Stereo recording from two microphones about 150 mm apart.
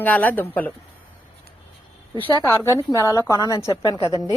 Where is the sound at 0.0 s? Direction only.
10° left (ahead or behind).